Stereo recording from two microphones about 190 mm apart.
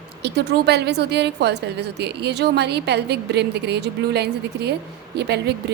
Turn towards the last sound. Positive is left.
turn(degrees=-60)  # may be behind; listen again after turning